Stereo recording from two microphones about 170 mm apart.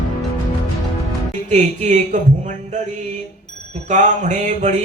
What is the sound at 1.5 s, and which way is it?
Music, 45° right (ahead or behind).